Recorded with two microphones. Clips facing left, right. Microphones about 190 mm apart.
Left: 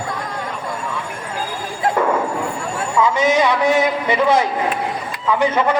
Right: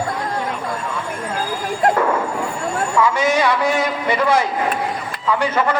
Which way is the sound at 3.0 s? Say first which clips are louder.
Left 2 dB; 20° left (ahead or behind).